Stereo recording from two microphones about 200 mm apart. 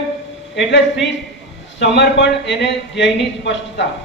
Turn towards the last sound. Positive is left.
turn(degrees=60)  # may be behind; listen again after turning